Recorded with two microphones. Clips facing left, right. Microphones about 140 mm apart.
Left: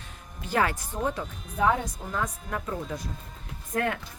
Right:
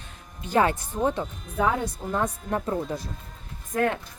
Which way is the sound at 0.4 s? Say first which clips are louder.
Right 4 dB; 25° right (ahead or behind).